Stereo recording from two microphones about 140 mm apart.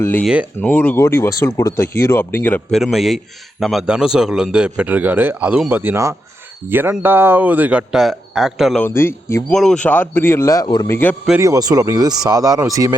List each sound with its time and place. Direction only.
0.0 s speech: 15° left (ahead or behind)
2.7 s a man's voice: centre (ahead or behind)
8.8 s speech: 15° left (ahead or behind)
9.5 s speech: 5° left (ahead or behind); by 10.8 s 30° left (ahead or behind)
10.8 s speech: 15° left (ahead or behind)
11.3 s speech: 25° right (ahead or behind)